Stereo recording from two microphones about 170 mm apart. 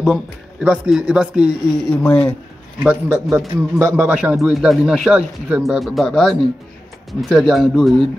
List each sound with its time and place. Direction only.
0.0 s a man's voice: 5° right (ahead or behind)
2.0 s speech: 5° left (ahead or behind)
2.8 s a man's voice: 10° right (ahead or behind)